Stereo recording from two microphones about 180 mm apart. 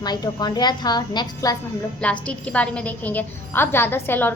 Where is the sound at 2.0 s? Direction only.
5° left (ahead or behind).